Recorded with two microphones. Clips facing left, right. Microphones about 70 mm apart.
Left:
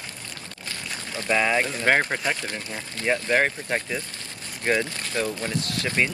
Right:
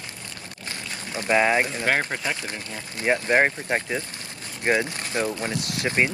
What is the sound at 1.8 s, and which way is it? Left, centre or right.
Speech, centre.